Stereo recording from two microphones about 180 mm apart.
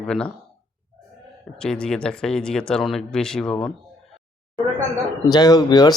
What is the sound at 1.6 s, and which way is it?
Speech, 5° left (ahead or behind).